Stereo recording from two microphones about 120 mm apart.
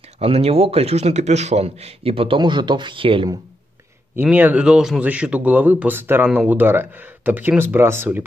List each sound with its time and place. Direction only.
0.2 s a man's voice: 55° right (ahead or behind)
4.1 s a man's voice: 15° right (ahead or behind)